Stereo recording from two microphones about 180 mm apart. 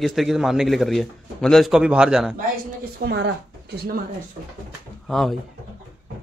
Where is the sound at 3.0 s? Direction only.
70° right (ahead or behind).